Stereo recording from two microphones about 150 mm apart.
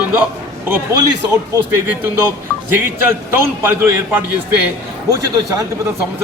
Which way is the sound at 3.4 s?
15° right (ahead or behind).